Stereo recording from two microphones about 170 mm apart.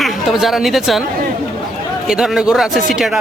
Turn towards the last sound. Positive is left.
turn(degrees=0)  # may be behind; listen again after turning